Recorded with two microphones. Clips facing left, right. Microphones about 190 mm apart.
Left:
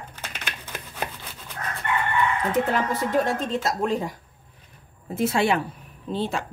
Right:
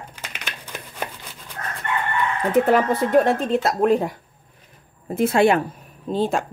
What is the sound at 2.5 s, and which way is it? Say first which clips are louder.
Speech: right 6 dB; 60° right (ahead or behind).